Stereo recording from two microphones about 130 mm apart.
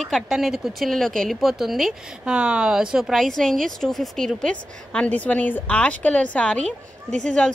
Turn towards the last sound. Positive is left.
turn(degrees=5)  # may be behind; listen again after turning